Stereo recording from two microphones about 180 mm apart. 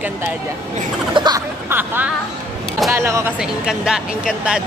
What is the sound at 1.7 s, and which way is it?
Speech, 10° right (ahead or behind).